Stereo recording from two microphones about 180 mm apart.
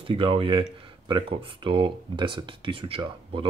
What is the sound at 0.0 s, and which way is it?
Speech, 30° right (ahead or behind).